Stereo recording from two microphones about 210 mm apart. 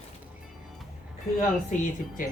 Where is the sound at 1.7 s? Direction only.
35° left (ahead or behind).